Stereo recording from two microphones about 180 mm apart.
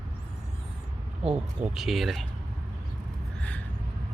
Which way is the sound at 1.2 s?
35° right (ahead or behind).